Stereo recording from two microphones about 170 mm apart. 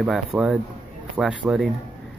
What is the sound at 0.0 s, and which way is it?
Speech, 5° right (ahead or behind).